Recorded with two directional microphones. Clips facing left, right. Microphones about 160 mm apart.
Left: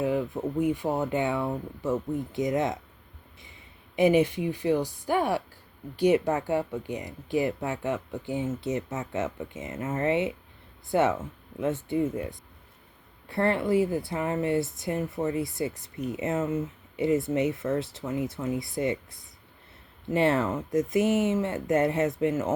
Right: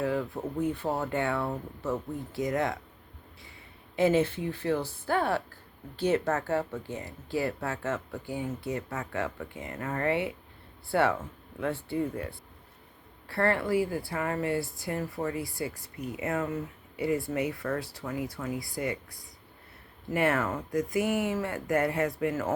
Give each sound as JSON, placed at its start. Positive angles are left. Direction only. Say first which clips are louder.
{"t": 0.0, "sound": "speech", "louder": "left 3 dB", "side_deg": 20}
{"t": 3.9, "sound": "speech", "louder": "left 3 dB", "side_deg": 15}